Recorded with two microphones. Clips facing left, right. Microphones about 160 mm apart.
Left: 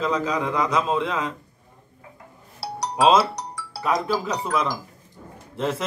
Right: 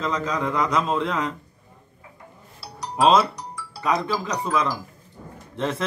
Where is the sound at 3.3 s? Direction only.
90° left.